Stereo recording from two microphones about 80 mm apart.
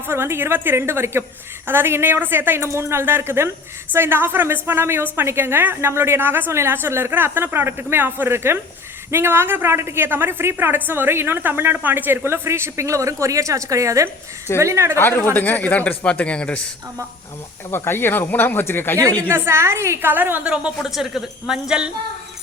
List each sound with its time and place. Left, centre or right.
0.0 s a woman's voice: right
15.3 s speech: left
17.7 s speech: left
19.3 s a woman's voice: right
20.5 s a woman's voice: centre